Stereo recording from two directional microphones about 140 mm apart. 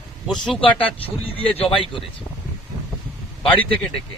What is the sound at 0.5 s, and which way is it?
Speech, 40° left (ahead or behind).